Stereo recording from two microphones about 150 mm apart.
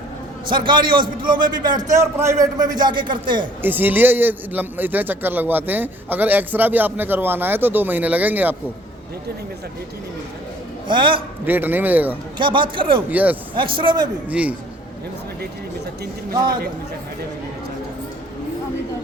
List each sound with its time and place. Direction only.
0.4 s a man's voice: 30° right (ahead or behind)
3.6 s a man's voice: 15° right (ahead or behind)
10.8 s a man's voice: 35° right (ahead or behind)
11.4 s a man's voice: 15° right (ahead or behind)
12.4 s a man's voice: 35° right (ahead or behind)
13.1 s a man's voice: 10° right (ahead or behind)
13.6 s a man's voice: 35° right (ahead or behind)
14.3 s a man's voice: 10° right (ahead or behind)